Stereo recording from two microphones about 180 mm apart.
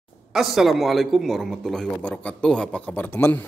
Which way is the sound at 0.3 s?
Centre (ahead or behind).